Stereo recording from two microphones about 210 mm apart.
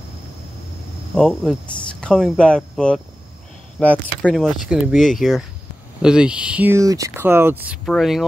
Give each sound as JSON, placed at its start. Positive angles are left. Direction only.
{"t": 1.1, "sound": "speech", "side_deg": 0}